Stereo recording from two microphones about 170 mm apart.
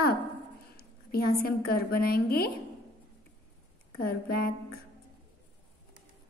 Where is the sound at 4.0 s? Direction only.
65° left (ahead or behind).